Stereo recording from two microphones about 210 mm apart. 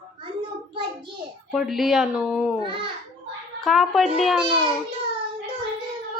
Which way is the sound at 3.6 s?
Centre (ahead or behind).